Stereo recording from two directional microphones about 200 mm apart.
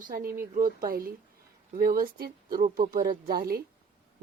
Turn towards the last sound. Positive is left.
turn(degrees=-50)  # may be behind; listen again after turning